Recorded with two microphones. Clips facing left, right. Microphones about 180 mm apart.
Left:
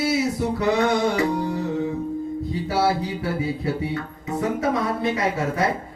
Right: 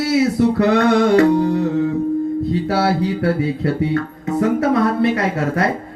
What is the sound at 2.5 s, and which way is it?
A man's voice, 70° right (ahead or behind).